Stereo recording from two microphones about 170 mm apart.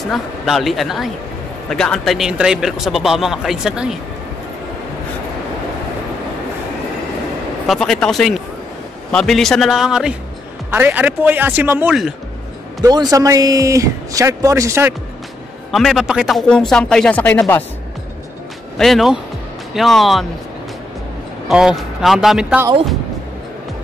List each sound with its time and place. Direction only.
0.0 s speech: centre (ahead or behind)
7.6 s speech: centre (ahead or behind)
12.8 s speech: 20° right (ahead or behind)
15.7 s speech: centre (ahead or behind)
18.8 s speech: centre (ahead or behind)
21.5 s speech: 5° right (ahead or behind)